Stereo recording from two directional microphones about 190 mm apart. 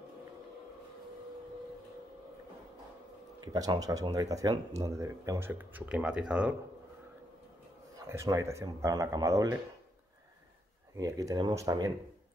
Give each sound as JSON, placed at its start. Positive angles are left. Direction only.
{"t": 3.5, "sound": "speech", "side_deg": -20}
{"t": 8.1, "sound": "speech", "side_deg": -15}
{"t": 11.0, "sound": "speech", "side_deg": -15}